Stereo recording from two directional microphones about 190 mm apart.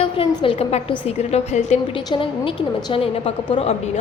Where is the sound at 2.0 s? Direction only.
25° left (ahead or behind).